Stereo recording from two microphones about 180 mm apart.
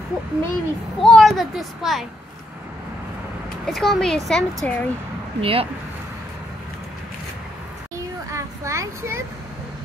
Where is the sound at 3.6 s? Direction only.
Centre (ahead or behind).